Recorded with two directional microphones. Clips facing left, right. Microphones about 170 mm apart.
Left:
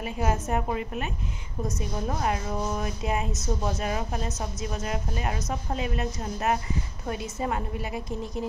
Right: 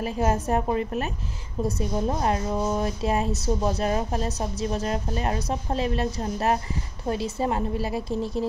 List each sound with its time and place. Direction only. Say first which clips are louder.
0.0 s speech: right 4 dB; 35° right (ahead or behind)